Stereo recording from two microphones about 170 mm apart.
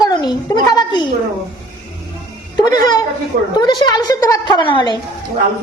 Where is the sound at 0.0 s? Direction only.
25° left (ahead or behind).